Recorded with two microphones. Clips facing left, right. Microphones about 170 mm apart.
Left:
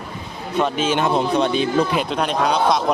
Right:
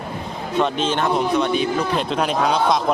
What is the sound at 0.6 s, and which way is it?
Speech, 5° left (ahead or behind).